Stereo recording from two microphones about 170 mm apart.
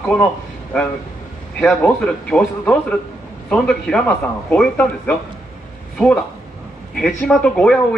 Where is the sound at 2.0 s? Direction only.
5° left (ahead or behind).